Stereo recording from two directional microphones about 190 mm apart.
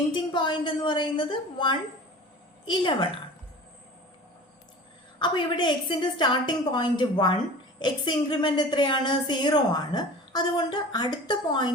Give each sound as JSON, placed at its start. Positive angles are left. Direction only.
{"t": 0.1, "sound": "a woman's voice", "side_deg": 25}
{"t": 5.2, "sound": "a woman's voice", "side_deg": 25}